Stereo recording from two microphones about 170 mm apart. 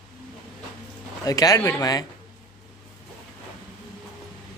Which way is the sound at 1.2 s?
20° left (ahead or behind).